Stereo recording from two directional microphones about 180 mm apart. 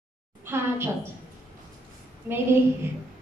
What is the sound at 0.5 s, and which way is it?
Speech, 15° right (ahead or behind).